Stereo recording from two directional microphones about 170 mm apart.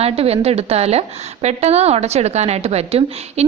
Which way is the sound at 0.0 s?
35° right (ahead or behind).